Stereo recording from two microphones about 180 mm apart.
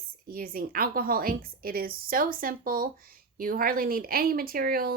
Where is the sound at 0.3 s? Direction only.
55° right (ahead or behind).